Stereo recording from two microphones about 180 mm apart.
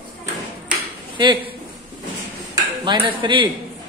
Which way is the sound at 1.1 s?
25° right (ahead or behind).